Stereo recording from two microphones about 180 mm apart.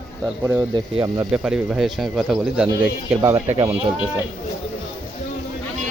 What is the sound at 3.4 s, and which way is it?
Speech, 35° right (ahead or behind).